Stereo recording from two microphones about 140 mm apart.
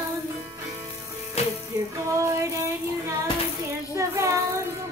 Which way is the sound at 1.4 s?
50° left (ahead or behind).